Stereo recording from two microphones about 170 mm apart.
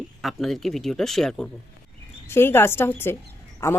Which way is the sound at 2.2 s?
15° left (ahead or behind).